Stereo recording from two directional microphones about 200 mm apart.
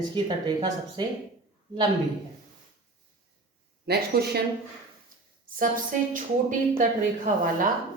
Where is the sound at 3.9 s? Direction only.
55° right (ahead or behind).